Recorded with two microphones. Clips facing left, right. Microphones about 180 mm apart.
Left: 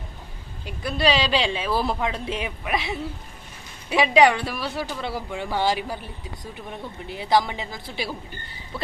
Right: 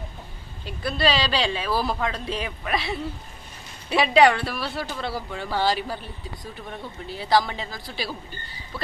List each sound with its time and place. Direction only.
0.7 s speech: 15° left (ahead or behind)